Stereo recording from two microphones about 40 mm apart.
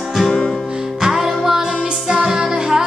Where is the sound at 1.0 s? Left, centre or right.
Centre.